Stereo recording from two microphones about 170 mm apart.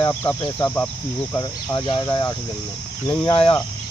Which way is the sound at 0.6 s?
10° left (ahead or behind).